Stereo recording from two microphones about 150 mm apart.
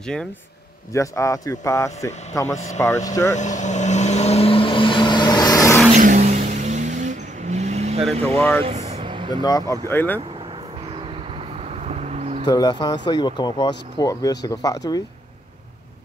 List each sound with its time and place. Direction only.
0.9 s speech: 20° left (ahead or behind)
3.3 s vehicle: 55° left (ahead or behind); by 5.8 s 25° left (ahead or behind)
5.9 s vehicle: 60° right (ahead or behind)
8.1 s speech: 45° right (ahead or behind)
8.4 s speech: 10° left (ahead or behind)
8.6 s vehicle: 45° right (ahead or behind)
9.0 s vehicle: 35° right (ahead or behind)
9.3 s speech: 25° left (ahead or behind)
11.9 s vehicle: 45° right (ahead or behind)
12.4 s speech: 30° left (ahead or behind)